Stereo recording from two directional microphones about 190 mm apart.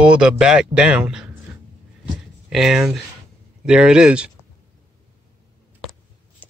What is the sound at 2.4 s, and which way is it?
Speech, 5° right (ahead or behind).